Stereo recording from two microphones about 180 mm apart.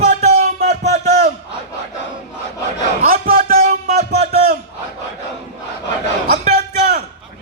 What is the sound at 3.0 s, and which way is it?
Music, 55° right (ahead or behind).